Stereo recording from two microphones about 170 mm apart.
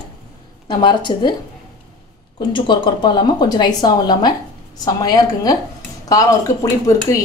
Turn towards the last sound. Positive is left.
turn(degrees=20)  # may be behind; listen again after turning